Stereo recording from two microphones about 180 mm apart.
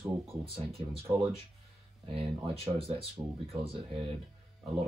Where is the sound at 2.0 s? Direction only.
30° right (ahead or behind).